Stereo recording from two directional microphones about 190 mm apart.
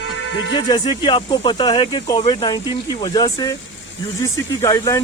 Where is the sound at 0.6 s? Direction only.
20° left (ahead or behind).